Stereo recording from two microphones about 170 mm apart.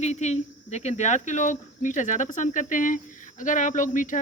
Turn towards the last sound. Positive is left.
turn(degrees=50)  # may be behind; listen again after turning